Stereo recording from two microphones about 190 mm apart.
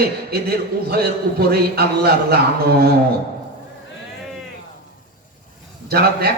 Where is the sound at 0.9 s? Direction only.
55° right (ahead or behind).